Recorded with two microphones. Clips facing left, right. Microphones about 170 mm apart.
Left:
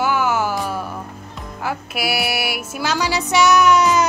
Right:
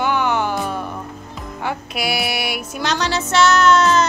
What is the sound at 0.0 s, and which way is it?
Music, 5° left (ahead or behind).